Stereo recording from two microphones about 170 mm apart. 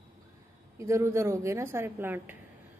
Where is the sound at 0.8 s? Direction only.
15° right (ahead or behind).